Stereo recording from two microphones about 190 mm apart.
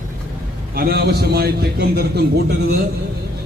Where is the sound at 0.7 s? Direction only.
55° right (ahead or behind).